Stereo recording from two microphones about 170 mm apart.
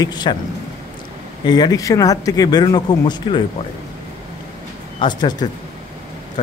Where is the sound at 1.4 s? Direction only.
25° left (ahead or behind).